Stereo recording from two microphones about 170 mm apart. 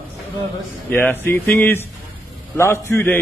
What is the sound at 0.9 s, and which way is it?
Speech, 10° left (ahead or behind).